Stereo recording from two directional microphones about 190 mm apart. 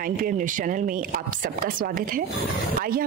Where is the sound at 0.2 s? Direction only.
45° right (ahead or behind).